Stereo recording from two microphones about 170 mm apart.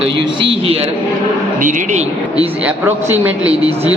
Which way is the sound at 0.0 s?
30° right (ahead or behind).